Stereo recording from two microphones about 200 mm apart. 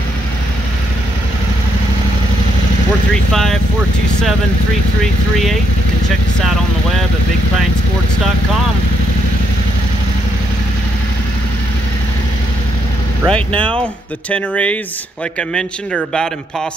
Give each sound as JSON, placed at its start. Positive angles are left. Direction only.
{"t": 13.3, "sound": "a man's voice", "side_deg": 5}